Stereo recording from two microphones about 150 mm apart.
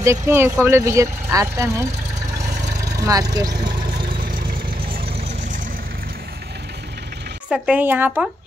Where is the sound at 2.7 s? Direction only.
90° right.